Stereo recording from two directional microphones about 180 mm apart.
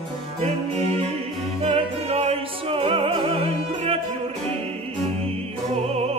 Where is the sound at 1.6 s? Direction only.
35° right (ahead or behind).